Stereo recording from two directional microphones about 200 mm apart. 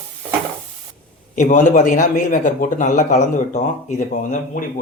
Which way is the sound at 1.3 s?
40° left (ahead or behind).